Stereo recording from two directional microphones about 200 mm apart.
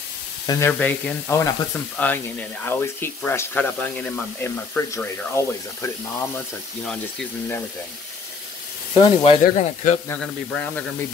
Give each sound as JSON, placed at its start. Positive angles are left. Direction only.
{"t": 0.5, "sound": "speech", "side_deg": 10}
{"t": 8.9, "sound": "speech", "side_deg": 25}
{"t": 9.4, "sound": "speech", "side_deg": 35}
{"t": 10.0, "sound": "speech", "side_deg": 5}